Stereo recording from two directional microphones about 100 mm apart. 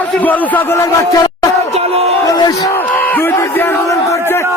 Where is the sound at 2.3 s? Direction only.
40° left (ahead or behind).